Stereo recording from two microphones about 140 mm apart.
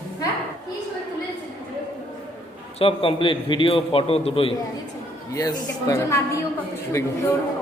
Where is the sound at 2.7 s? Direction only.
40° left (ahead or behind).